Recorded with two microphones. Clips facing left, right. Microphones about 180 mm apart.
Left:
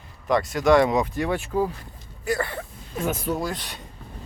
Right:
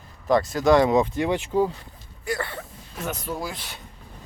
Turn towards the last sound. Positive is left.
turn(degrees=-5)  # may be behind; listen again after turning